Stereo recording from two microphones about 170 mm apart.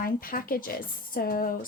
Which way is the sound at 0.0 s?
55° left (ahead or behind).